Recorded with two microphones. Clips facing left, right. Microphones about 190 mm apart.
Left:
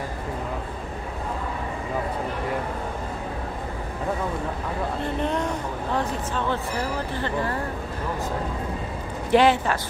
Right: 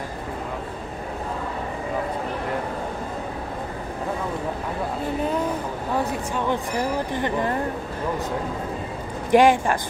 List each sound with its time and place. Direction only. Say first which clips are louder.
5.2 s a sound: right 1 dB; 5° right (ahead or behind)
5.9 s a woman's voice: right 2 dB; 15° right (ahead or behind)
9.3 s a woman's voice: right 2 dB; 10° right (ahead or behind)